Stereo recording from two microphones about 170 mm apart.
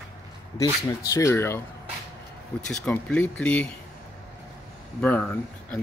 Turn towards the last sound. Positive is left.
turn(degrees=10)  # may be behind; listen again after turning